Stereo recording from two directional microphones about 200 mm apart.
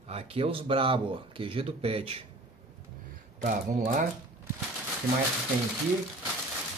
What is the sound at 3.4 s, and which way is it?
Speech, 40° right (ahead or behind).